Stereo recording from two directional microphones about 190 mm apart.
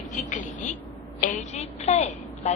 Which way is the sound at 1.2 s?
40° left (ahead or behind).